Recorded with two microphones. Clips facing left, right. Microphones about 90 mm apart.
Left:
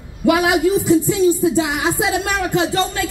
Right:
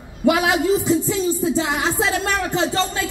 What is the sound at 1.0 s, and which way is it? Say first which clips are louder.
Speech: left 5 dB; 20° left (ahead or behind).